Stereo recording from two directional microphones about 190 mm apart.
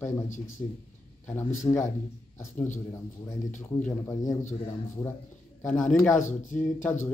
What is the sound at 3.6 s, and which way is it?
Speech, 10° left (ahead or behind).